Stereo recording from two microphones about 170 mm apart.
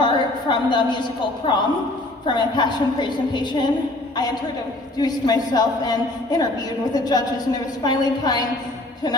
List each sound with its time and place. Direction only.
0.0 s a woman's voice: 25° left (ahead or behind)
4.9 s a woman's voice: 25° left (ahead or behind)